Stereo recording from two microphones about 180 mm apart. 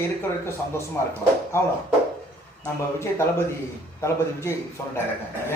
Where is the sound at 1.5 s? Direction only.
15° left (ahead or behind).